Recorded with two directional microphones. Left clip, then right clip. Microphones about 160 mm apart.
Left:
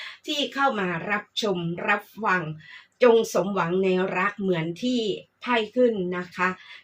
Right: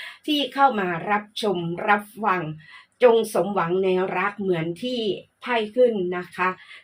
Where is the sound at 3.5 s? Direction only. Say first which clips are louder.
Right 2 dB; 35° right (ahead or behind).